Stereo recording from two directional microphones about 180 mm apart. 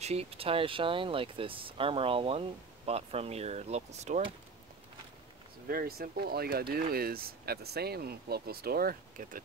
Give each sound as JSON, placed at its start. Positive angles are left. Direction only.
{"t": 0.0, "sound": "speech", "side_deg": -35}
{"t": 5.7, "sound": "speech", "side_deg": -55}